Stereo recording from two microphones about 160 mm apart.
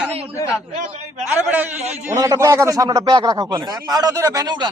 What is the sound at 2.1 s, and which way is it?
A man's voice, 20° right (ahead or behind).